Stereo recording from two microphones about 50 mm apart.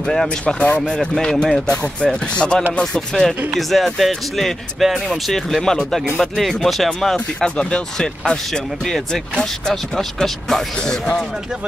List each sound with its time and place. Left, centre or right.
0.0 s speech: centre
0.6 s speech: left
2.8 s speech: centre
5.6 s speech: centre
6.1 s speech: centre
8.8 s speech: centre